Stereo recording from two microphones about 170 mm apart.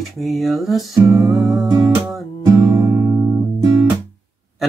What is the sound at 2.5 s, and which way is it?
Music, 20° right (ahead or behind).